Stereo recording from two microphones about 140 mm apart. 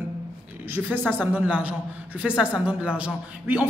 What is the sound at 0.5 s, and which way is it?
A woman's voice, 15° right (ahead or behind).